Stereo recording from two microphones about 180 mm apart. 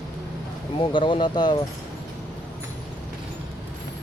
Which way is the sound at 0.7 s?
30° left (ahead or behind).